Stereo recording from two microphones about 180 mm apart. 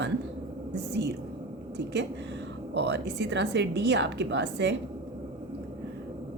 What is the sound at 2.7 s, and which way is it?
A woman's voice, 70° right (ahead or behind).